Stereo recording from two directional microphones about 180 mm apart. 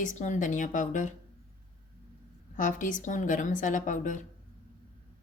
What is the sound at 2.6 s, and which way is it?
Speech, 45° left (ahead or behind).